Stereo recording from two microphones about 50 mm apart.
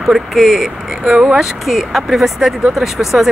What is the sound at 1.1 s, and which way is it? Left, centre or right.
Speech, right.